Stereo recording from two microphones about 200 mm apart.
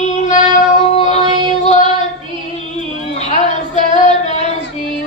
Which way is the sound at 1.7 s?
35° left (ahead or behind).